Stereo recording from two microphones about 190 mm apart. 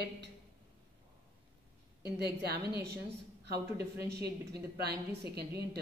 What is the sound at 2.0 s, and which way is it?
Speech, 55° right (ahead or behind).